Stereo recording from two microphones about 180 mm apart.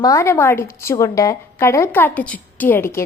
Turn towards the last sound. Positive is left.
turn(degrees=15)  # may be behind; listen again after turning